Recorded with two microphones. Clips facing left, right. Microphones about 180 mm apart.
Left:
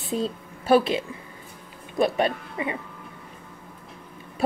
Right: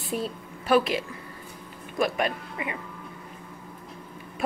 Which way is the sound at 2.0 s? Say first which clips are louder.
Left 4 dB; 30° left (ahead or behind).